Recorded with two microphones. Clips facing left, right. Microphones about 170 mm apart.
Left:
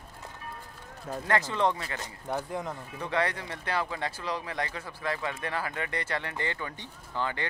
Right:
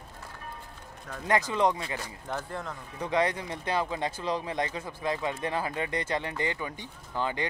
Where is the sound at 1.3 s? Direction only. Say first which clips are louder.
Right 2 dB; 15° right (ahead or behind).